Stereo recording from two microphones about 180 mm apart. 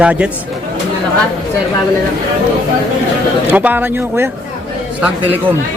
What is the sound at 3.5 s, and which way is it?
Speech, 10° right (ahead or behind).